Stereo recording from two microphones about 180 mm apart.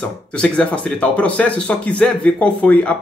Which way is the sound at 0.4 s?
5° left (ahead or behind).